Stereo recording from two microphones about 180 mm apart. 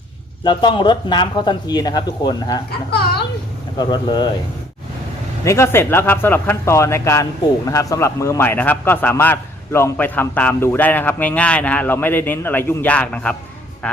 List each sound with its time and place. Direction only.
0.4 s speech: 25° left (ahead or behind)
2.9 s a child's voice: 65° left (ahead or behind)
3.8 s speech: 25° left (ahead or behind)
5.5 s speech: 15° left (ahead or behind)